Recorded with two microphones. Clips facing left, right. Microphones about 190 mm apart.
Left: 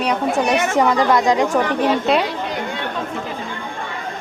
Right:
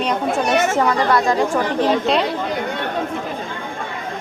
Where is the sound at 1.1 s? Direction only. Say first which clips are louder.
Left 1 dB; 20° left (ahead or behind).